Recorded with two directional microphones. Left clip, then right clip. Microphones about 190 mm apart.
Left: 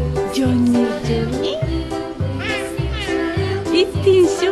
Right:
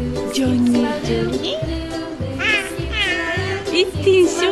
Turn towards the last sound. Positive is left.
turn(degrees=0)  # may be behind; listen again after turning